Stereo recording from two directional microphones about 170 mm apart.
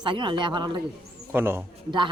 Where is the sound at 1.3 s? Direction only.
15° right (ahead or behind).